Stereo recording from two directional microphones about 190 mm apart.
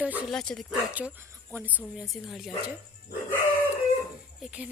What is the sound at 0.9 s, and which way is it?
Speech, 10° right (ahead or behind).